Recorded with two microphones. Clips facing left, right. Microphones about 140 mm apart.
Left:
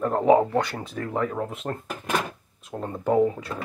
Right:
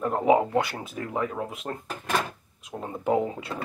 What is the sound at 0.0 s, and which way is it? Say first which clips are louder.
Speech: left 3 dB; 5° right (ahead or behind).